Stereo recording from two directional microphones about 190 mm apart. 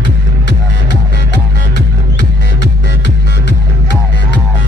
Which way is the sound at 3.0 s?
70° left (ahead or behind).